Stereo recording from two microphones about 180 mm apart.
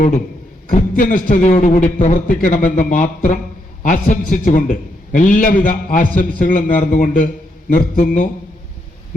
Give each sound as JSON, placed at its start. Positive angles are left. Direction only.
{"t": 0.7, "sound": "a man's voice", "side_deg": 50}